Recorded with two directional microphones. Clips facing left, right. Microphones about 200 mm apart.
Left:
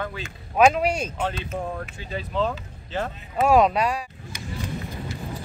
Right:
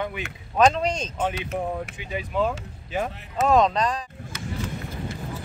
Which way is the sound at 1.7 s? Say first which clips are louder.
Right 1 dB; 15° right (ahead or behind).